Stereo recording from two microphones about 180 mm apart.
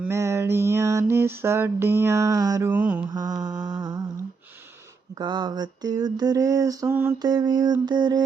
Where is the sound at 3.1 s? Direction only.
20° right (ahead or behind).